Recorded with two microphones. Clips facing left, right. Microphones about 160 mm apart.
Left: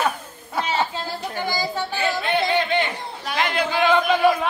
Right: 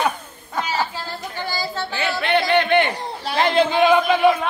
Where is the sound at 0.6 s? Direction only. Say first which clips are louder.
Left 2 dB; 25° left (ahead or behind).